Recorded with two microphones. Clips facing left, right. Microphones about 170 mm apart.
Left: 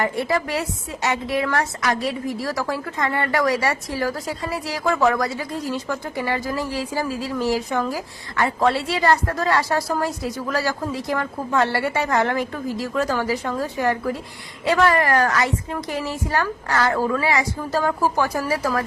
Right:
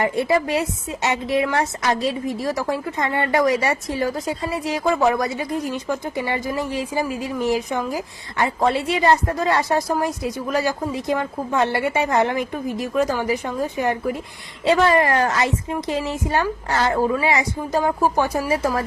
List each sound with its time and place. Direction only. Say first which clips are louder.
0.0 s a woman's voice: right 3 dB; 20° right (ahead or behind)